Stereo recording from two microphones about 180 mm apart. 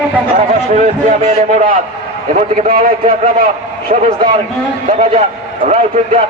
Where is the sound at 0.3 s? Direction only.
40° right (ahead or behind).